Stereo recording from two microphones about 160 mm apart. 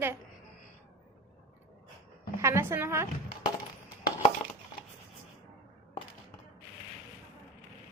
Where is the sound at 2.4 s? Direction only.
15° right (ahead or behind).